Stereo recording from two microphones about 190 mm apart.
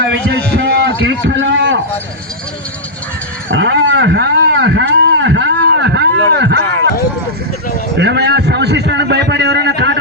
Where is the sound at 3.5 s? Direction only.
75° right (ahead or behind).